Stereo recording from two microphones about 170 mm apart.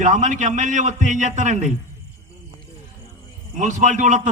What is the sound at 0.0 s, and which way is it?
A man's voice, 45° right (ahead or behind).